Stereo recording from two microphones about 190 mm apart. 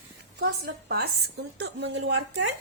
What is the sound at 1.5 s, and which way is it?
Speech, 65° right (ahead or behind).